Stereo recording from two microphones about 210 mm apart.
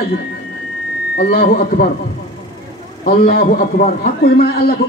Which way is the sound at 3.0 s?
45° left (ahead or behind).